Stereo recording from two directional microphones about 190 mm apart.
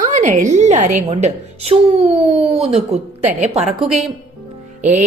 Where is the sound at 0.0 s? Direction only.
40° right (ahead or behind).